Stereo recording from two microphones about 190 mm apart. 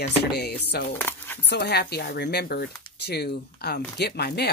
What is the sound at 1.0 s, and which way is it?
Speech, 10° left (ahead or behind).